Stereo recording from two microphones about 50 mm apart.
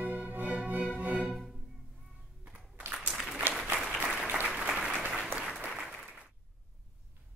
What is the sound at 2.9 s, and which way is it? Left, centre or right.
Applause, centre.